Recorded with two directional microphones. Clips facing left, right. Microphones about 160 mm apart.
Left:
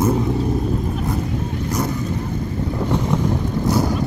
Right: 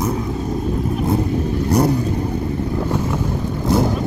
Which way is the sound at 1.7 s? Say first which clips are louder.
Right 7 dB; 35° right (ahead or behind).